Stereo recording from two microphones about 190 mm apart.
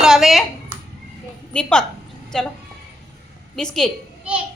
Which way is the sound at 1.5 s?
5° left (ahead or behind).